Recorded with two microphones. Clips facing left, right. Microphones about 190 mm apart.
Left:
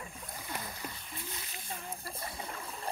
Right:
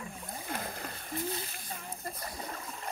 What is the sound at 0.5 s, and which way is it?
Rowboat, 55° right (ahead or behind).